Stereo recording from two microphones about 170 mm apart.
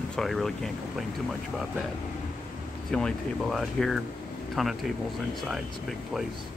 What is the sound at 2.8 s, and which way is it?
Speech, 5° left (ahead or behind).